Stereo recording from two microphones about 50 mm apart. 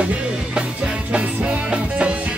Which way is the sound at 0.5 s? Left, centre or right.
Right.